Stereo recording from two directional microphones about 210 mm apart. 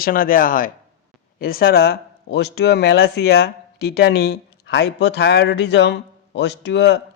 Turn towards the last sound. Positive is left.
turn(degrees=55)  # may be behind; listen again after turning